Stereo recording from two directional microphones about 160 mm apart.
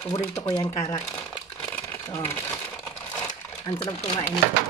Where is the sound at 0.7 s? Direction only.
15° left (ahead or behind).